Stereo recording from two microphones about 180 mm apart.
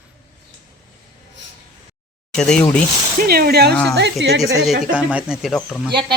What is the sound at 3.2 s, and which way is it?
Speech, 60° right (ahead or behind).